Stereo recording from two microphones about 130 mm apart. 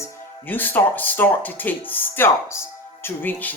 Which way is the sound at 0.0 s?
15° left (ahead or behind).